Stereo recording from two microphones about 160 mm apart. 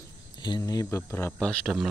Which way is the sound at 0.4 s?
25° left (ahead or behind).